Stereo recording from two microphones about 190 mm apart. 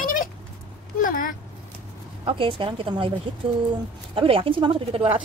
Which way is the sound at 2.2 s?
30° right (ahead or behind).